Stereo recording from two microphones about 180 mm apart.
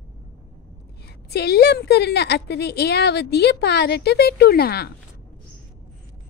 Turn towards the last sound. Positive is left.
turn(degrees=60)  # may be behind; listen again after turning